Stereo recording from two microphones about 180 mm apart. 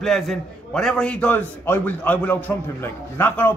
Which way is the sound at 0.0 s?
Centre (ahead or behind).